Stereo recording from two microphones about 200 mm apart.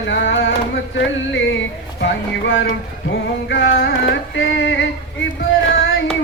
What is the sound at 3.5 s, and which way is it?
Carnatic music, 50° left (ahead or behind).